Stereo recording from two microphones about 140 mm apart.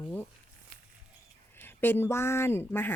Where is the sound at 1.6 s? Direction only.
15° left (ahead or behind).